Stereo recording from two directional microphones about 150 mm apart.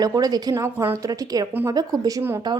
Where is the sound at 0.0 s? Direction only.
25° right (ahead or behind).